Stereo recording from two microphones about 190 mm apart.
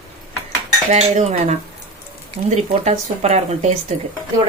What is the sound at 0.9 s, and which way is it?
Speech, 35° right (ahead or behind).